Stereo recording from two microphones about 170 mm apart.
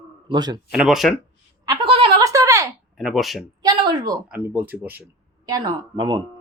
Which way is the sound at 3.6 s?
25° right (ahead or behind).